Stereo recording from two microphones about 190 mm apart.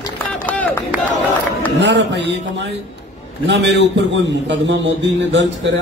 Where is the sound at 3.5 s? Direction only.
65° right (ahead or behind).